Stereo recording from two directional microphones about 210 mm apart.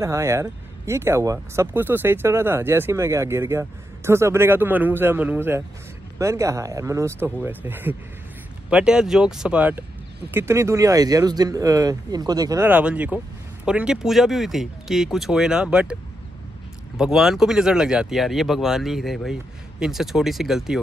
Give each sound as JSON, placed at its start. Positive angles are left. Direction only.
{"t": 0.0, "sound": "speech", "side_deg": -15}